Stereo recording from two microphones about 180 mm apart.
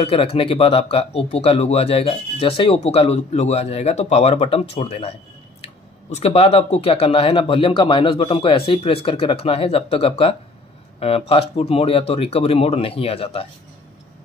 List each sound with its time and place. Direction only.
0.0 s speech: 30° left (ahead or behind)